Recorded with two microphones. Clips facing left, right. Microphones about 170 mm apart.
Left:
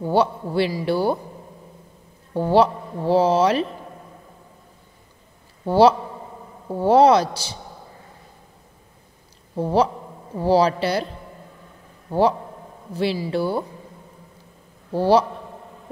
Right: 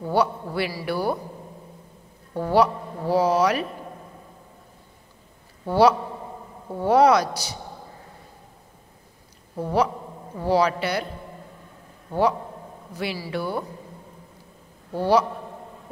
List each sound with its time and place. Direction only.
0.0 s speech: 25° left (ahead or behind)
2.3 s speech: 25° left (ahead or behind)
5.7 s speech: 30° left (ahead or behind)
9.6 s a man's voice: 30° left (ahead or behind)
12.1 s a man's voice: 30° left (ahead or behind)
14.9 s a man's voice: 30° left (ahead or behind)